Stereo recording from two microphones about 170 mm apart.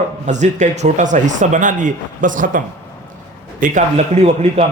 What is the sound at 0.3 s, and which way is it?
A man's voice, 45° right (ahead or behind).